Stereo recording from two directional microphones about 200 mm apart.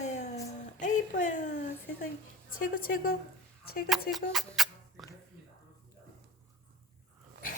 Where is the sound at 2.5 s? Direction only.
45° left (ahead or behind).